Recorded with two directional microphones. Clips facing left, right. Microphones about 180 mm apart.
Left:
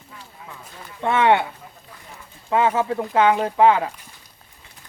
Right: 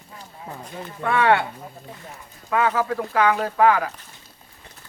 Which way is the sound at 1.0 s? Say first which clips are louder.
Left 1 dB; 20° left (ahead or behind).